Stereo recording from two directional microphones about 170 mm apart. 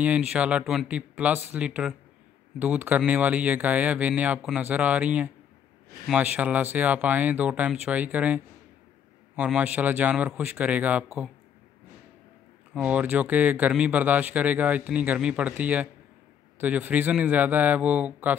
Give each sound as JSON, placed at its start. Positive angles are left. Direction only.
{"t": 0.0, "sound": "speech", "side_deg": -5}
{"t": 12.7, "sound": "speech", "side_deg": -10}